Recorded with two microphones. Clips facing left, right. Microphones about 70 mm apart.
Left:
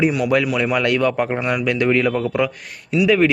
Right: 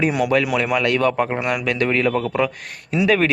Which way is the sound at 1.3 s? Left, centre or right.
Centre.